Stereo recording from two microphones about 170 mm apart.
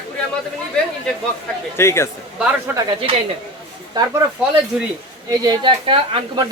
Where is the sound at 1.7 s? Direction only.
15° left (ahead or behind).